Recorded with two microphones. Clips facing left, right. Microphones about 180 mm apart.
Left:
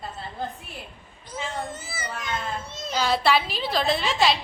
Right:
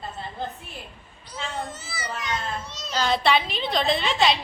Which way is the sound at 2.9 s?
10° left (ahead or behind).